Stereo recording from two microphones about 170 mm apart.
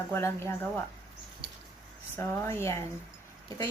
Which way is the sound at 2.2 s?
15° left (ahead or behind).